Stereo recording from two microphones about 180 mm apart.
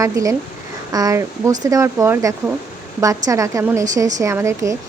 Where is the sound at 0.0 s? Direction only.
20° right (ahead or behind).